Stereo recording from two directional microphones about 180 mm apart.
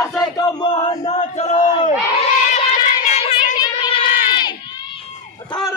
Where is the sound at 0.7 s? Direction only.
35° left (ahead or behind).